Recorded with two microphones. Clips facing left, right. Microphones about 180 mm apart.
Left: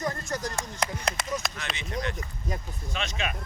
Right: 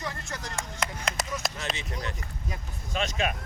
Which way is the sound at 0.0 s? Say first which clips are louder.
Left 6 dB; 40° left (ahead or behind).